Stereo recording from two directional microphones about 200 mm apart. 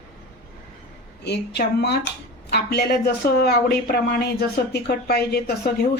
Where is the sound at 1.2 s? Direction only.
55° left (ahead or behind).